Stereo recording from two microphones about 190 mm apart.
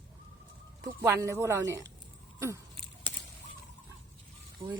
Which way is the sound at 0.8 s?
15° right (ahead or behind).